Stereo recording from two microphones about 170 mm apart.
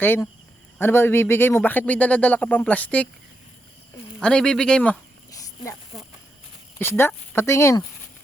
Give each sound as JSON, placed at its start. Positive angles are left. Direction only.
{"t": 0.0, "sound": "speech", "side_deg": 10}
{"t": 4.2, "sound": "speech", "side_deg": 5}
{"t": 6.7, "sound": "speech", "side_deg": 15}